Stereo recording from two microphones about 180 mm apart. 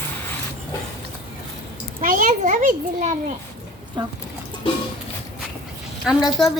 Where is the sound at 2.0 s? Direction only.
50° right (ahead or behind).